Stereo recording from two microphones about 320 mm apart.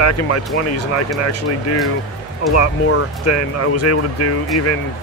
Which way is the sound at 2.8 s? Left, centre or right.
Left.